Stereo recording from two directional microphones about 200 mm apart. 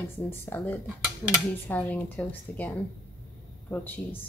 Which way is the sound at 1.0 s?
5° right (ahead or behind).